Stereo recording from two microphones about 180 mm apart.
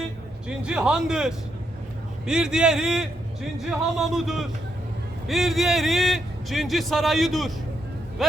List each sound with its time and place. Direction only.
0.4 s a man's voice: 5° right (ahead or behind)